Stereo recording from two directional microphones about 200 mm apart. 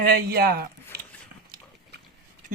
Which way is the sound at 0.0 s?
50° right (ahead or behind).